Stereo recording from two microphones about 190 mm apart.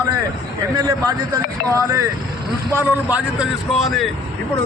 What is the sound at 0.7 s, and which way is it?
Speech, 20° right (ahead or behind).